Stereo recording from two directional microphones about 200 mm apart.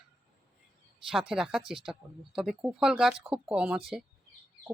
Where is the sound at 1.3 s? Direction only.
Centre (ahead or behind).